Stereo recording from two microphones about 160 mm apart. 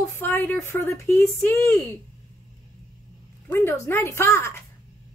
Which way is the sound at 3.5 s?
15° left (ahead or behind).